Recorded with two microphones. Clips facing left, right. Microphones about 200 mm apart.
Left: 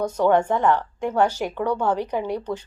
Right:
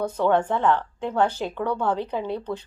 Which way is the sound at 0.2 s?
10° left (ahead or behind).